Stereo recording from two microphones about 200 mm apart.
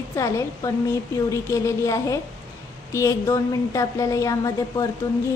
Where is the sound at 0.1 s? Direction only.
15° left (ahead or behind).